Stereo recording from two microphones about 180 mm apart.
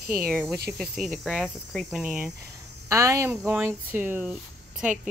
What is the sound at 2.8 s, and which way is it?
Speech, 15° right (ahead or behind).